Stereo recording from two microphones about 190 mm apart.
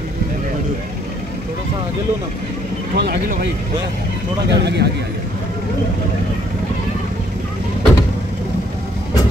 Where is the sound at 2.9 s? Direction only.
60° right (ahead or behind).